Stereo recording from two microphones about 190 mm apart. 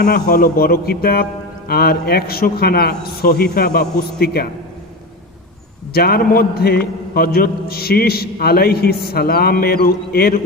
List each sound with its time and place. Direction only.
0.0 s a man's voice: 50° left (ahead or behind)
5.9 s a man's voice: 55° left (ahead or behind)